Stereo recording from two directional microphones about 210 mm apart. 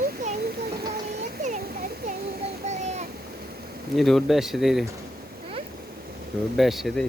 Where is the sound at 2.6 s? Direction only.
30° right (ahead or behind).